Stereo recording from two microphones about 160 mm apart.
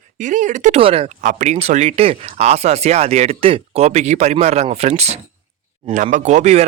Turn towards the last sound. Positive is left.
turn(degrees=-45)  # may be behind; listen again after turning